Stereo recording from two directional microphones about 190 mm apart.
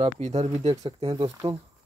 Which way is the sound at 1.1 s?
25° right (ahead or behind).